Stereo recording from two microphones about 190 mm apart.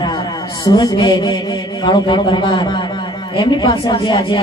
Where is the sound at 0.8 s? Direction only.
25° left (ahead or behind).